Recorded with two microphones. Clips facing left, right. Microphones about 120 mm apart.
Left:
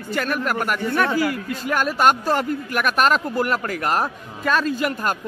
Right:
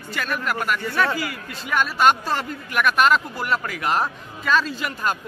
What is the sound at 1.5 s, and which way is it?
A man's voice, 45° left (ahead or behind).